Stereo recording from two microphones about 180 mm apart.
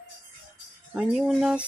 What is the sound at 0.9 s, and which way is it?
Speech, 5° right (ahead or behind).